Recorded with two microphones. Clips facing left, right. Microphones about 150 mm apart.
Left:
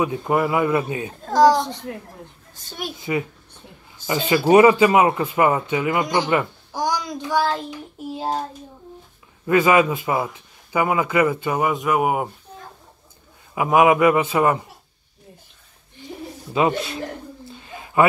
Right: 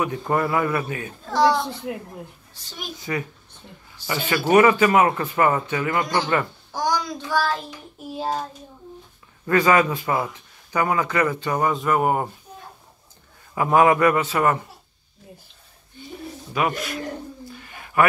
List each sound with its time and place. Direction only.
0.3 s a man's voice: 15° left (ahead or behind)
1.2 s a sound: 40° left (ahead or behind)
1.6 s speech: 5° right (ahead or behind)
2.5 s a child's voice: 55° left (ahead or behind)
3.0 s a man's voice: 20° left (ahead or behind)
9.5 s speech: 10° left (ahead or behind)
13.6 s speech: 10° left (ahead or behind)
16.5 s a man's voice: 25° left (ahead or behind)
17.5 s bird: 25° left (ahead or behind)